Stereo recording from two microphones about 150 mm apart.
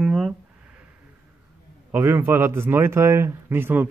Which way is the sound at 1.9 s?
15° right (ahead or behind).